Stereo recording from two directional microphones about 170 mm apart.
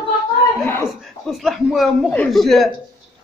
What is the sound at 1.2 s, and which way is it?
A man's voice, centre (ahead or behind).